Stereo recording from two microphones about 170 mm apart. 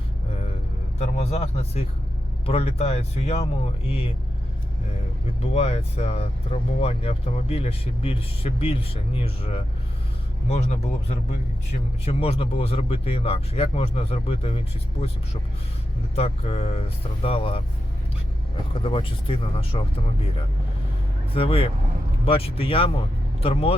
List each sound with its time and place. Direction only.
0.9 s speech: 45° left (ahead or behind)
5.4 s speech: 35° left (ahead or behind)
12.0 s speech: 35° left (ahead or behind)
16.1 s speech: 35° left (ahead or behind)
21.3 s speech: 35° left (ahead or behind)